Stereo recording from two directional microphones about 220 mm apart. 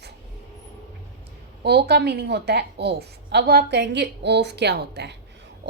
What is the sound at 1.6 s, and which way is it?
A woman's voice, 50° right (ahead or behind).